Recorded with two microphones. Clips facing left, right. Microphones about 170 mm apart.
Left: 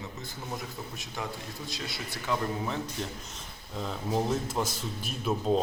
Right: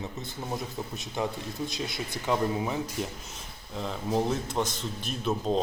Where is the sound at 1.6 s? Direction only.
20° right (ahead or behind).